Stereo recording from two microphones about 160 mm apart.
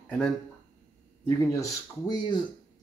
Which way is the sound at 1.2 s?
20° left (ahead or behind).